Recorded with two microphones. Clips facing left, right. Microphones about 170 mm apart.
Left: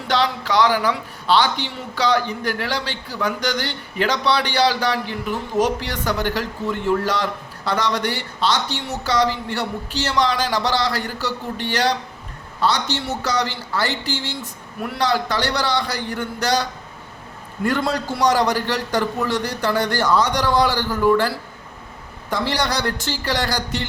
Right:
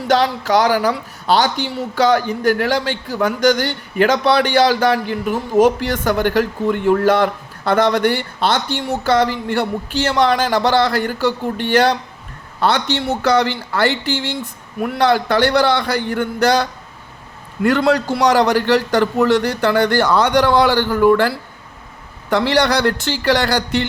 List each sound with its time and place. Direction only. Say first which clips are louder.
0.1 s a man's voice: right 5 dB; 45° right (ahead or behind)
17.6 s a man's voice: right 7 dB; 75° right (ahead or behind)